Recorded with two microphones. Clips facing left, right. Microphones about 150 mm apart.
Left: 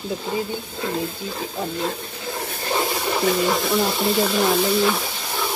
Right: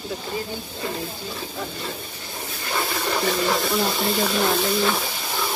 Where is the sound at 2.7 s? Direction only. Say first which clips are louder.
Left 4 dB; 20° left (ahead or behind).